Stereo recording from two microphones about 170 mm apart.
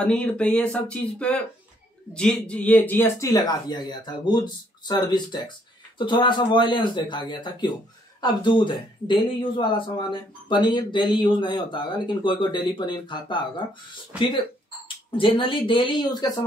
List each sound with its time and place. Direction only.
0.0 s speech: 5° left (ahead or behind); by 13.5 s 25° left (ahead or behind)
15.0 s speech: 30° left (ahead or behind)